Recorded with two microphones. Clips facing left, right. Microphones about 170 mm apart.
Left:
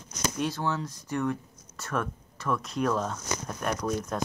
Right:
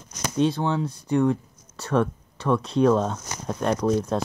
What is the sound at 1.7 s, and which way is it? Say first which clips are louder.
Speech: right 9 dB; 30° right (ahead or behind).